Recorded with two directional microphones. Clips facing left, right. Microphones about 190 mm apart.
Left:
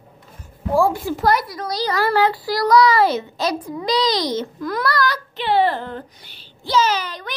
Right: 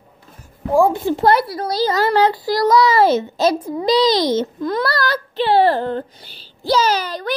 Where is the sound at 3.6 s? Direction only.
25° right (ahead or behind).